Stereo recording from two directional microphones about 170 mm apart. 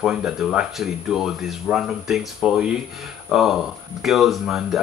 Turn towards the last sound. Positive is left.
turn(degrees=0)  # may be behind; listen again after turning